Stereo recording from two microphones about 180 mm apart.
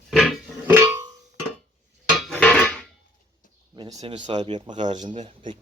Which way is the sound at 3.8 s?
20° right (ahead or behind).